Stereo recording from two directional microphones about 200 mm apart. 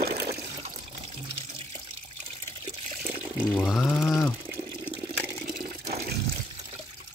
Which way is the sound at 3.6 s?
5° left (ahead or behind).